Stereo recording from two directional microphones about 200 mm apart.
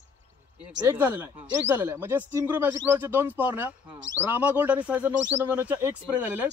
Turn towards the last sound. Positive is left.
turn(degrees=-5)  # may be behind; listen again after turning